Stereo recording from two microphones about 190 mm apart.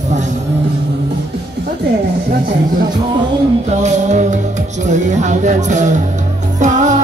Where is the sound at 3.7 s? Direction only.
40° right (ahead or behind).